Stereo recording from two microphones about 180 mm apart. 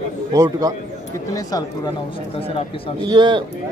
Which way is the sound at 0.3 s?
20° right (ahead or behind).